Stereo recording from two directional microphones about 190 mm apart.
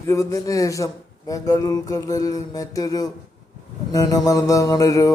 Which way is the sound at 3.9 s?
20° left (ahead or behind).